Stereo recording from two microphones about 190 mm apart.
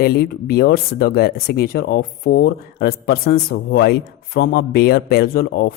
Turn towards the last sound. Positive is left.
turn(degrees=55)  # may be behind; listen again after turning